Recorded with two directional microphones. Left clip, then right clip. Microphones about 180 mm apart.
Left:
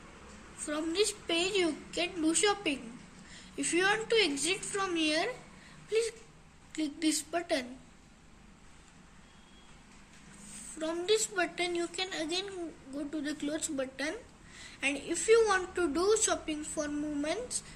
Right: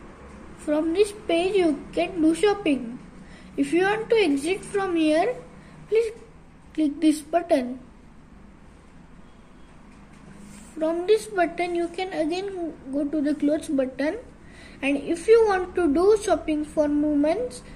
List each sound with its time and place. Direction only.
0.7 s a woman's voice: 30° right (ahead or behind)
10.8 s a woman's voice: 35° right (ahead or behind)